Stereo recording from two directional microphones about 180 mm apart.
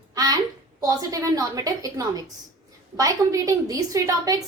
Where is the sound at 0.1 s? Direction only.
20° right (ahead or behind).